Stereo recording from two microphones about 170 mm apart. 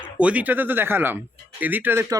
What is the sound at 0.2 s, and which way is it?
Speech, 10° right (ahead or behind).